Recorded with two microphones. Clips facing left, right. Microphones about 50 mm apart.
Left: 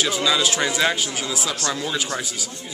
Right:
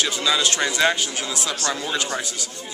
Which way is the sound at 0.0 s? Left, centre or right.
Centre.